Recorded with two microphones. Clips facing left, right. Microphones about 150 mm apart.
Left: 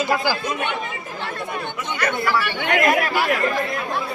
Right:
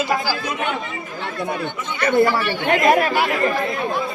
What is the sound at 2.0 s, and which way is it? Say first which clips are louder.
Speech: right 6 dB; 30° right (ahead or behind).